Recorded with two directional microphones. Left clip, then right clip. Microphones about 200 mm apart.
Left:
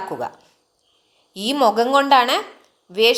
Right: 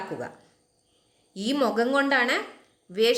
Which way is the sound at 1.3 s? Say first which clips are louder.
Left 8 dB; centre (ahead or behind).